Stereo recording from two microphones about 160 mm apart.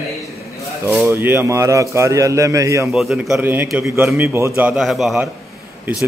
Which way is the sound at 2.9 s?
Centre (ahead or behind).